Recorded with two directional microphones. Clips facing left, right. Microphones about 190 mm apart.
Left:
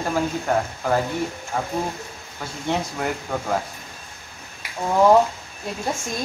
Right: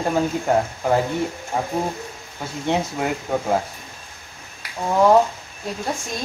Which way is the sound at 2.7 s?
15° right (ahead or behind).